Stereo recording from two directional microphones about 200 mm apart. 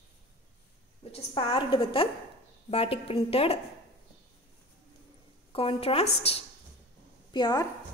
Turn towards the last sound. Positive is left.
turn(degrees=20)  # may be behind; listen again after turning